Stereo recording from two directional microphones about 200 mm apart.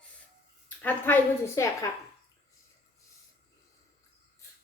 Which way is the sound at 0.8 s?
10° left (ahead or behind).